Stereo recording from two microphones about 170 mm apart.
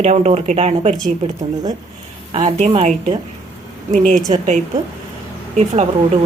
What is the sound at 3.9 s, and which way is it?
Speech, 50° right (ahead or behind).